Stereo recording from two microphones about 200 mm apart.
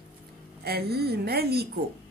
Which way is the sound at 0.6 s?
50° right (ahead or behind).